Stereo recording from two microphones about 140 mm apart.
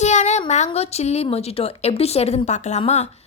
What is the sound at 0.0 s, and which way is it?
Speech, 55° left (ahead or behind).